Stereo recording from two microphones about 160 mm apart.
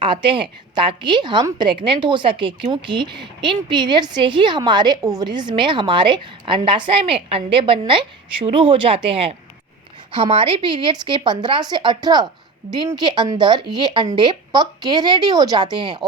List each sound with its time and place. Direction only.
0.0 s a woman's voice: 30° right (ahead or behind)